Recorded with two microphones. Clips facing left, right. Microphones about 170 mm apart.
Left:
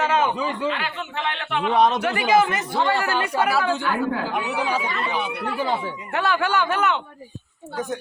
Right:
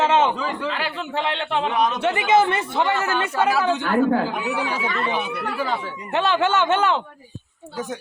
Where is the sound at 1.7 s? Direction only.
35° left (ahead or behind).